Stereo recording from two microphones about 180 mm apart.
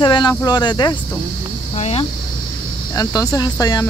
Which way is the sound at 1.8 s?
35° left (ahead or behind).